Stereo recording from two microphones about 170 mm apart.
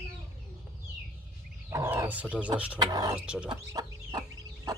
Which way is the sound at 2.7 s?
25° right (ahead or behind).